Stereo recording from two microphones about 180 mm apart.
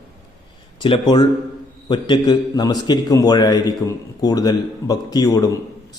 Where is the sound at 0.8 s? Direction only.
25° left (ahead or behind).